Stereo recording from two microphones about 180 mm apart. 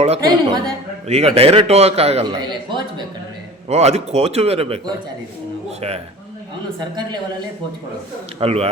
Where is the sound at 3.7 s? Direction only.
35° right (ahead or behind).